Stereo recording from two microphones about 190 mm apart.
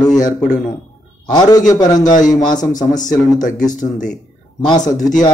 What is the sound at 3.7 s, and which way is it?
Speech, 40° left (ahead or behind).